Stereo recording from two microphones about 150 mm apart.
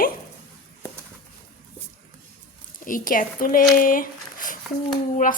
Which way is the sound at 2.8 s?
65° left (ahead or behind).